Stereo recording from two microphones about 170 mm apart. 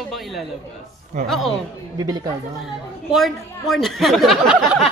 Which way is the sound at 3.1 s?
Centre (ahead or behind).